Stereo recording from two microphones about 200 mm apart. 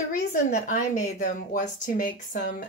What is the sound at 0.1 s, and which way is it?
A woman's voice, 40° left (ahead or behind).